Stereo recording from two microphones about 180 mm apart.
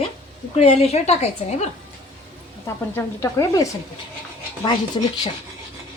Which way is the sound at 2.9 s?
15° left (ahead or behind).